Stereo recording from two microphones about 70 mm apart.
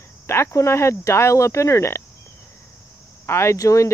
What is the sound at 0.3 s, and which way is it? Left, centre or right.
Speech, left.